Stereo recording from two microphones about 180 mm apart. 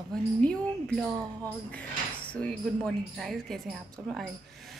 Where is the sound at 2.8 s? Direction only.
Centre (ahead or behind).